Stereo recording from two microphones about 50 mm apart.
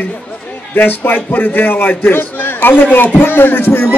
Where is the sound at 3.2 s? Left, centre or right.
Left.